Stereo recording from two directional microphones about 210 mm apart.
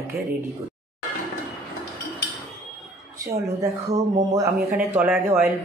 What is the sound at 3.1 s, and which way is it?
Speech, 15° right (ahead or behind).